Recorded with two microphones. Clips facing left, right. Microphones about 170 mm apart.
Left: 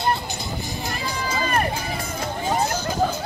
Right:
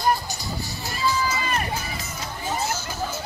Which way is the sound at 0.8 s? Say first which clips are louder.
Right 6 dB; 55° left (ahead or behind).